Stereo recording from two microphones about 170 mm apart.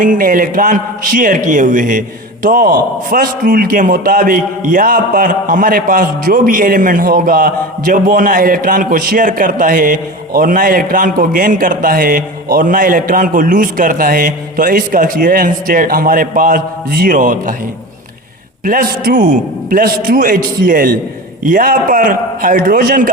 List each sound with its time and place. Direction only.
0.0 s a man's voice: 50° right (ahead or behind)
18.6 s a man's voice: 55° right (ahead or behind)